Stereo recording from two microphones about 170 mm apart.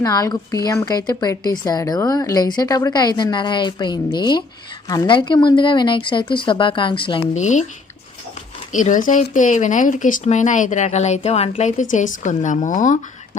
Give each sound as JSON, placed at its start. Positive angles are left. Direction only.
{"t": 0.0, "sound": "a woman's voice", "side_deg": 20}
{"t": 7.3, "sound": "speech", "side_deg": 45}
{"t": 8.7, "sound": "speech", "side_deg": 50}